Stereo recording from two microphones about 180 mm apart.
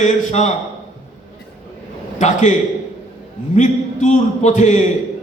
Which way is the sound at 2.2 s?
45° left (ahead or behind).